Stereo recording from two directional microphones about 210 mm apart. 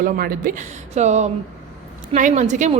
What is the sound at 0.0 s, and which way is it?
Speech, 40° right (ahead or behind).